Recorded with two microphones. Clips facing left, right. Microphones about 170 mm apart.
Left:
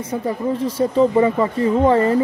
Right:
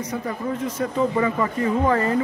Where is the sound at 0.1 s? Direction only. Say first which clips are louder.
Left 8 dB; 30° left (ahead or behind).